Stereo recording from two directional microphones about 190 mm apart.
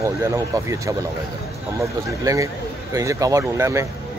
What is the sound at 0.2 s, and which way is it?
Speech, 15° right (ahead or behind).